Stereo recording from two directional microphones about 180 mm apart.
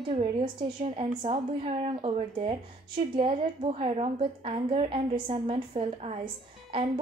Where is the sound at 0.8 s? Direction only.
30° right (ahead or behind).